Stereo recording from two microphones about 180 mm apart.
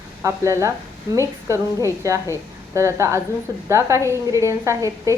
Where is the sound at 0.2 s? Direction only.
15° right (ahead or behind).